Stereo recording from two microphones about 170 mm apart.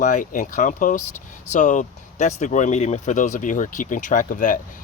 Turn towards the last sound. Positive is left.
turn(degrees=50)  # may be behind; listen again after turning